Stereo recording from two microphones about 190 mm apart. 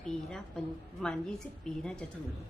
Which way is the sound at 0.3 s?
5° left (ahead or behind).